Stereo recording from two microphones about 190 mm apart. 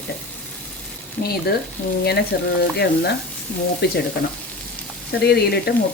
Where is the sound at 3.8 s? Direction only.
55° left (ahead or behind).